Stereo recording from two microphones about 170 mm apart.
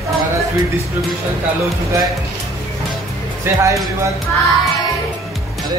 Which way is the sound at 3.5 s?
15° right (ahead or behind).